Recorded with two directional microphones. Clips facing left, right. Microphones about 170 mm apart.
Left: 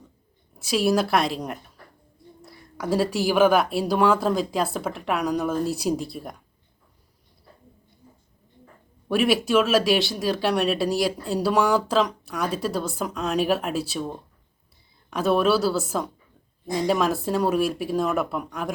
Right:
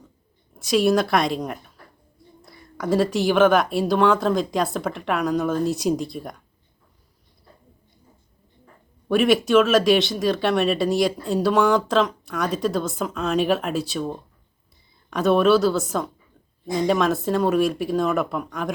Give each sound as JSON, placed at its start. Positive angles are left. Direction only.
{"t": 0.6, "sound": "speech", "side_deg": 5}
{"t": 9.0, "sound": "speech", "side_deg": 5}